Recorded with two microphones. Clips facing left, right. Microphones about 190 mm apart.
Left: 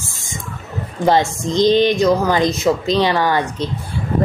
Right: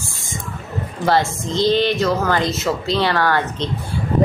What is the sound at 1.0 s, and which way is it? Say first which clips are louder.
A woman's voice: left 3 dB; 20° left (ahead or behind).